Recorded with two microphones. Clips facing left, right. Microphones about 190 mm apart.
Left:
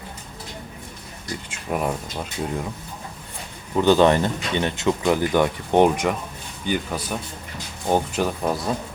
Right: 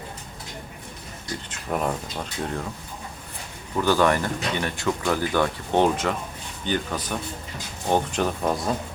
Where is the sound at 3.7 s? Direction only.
20° left (ahead or behind); by 8.6 s 5° left (ahead or behind).